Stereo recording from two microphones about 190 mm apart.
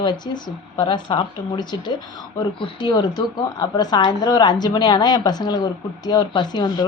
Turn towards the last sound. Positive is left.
turn(degrees=20)  # may be behind; listen again after turning